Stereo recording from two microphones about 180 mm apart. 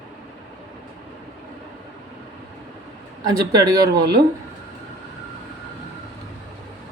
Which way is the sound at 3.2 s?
20° right (ahead or behind).